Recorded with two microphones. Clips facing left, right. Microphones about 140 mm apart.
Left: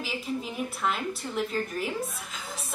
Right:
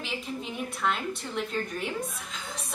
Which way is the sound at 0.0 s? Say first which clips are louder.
Left 3 dB; 5° left (ahead or behind).